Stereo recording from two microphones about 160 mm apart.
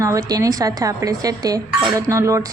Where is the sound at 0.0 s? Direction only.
20° right (ahead or behind).